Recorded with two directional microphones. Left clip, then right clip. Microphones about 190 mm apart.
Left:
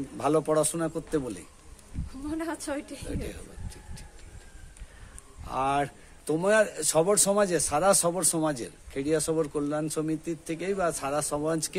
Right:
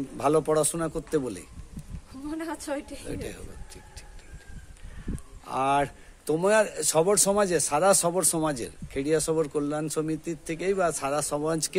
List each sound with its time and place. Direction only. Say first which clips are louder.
0.2 s a man's voice: right 1 dB; 35° right (ahead or behind)
2.2 s a woman's voice: even; 5° left (ahead or behind)
3.1 s a sound: right 1 dB; 35° right (ahead or behind)
5.4 s a man's voice: right 2 dB; 30° right (ahead or behind)